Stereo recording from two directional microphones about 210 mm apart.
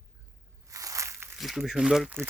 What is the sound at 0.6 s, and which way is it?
Crushing, 15° right (ahead or behind).